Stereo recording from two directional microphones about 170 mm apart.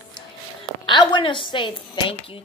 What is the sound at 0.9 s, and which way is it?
A woman's voice, 25° left (ahead or behind).